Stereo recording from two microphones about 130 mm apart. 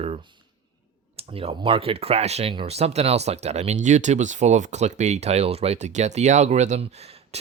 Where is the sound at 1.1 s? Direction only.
45° right (ahead or behind).